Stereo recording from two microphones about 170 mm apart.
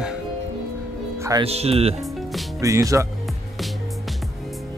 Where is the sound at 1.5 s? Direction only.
35° right (ahead or behind).